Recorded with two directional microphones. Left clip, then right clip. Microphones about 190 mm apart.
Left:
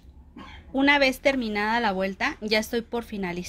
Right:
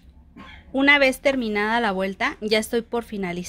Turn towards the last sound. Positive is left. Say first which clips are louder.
# right 3 dB
turn(degrees=-25)  # may be behind; listen again after turning